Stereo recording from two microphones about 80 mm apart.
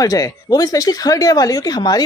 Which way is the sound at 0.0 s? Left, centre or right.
Left.